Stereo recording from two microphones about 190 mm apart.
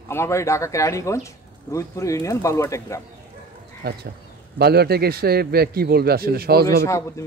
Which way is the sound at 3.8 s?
55° right (ahead or behind).